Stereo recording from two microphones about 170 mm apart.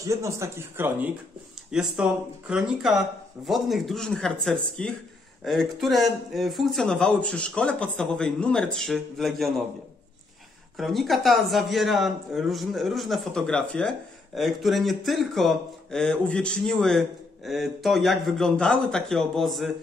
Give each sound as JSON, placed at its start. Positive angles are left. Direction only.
{"t": 0.0, "sound": "a man's voice", "side_deg": -20}
{"t": 10.8, "sound": "a man's voice", "side_deg": 0}